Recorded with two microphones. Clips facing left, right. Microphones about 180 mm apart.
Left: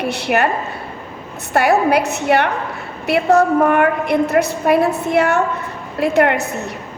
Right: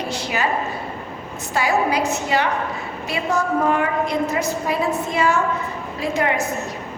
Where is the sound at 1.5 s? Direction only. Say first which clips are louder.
Left 6 dB; 65° left (ahead or behind).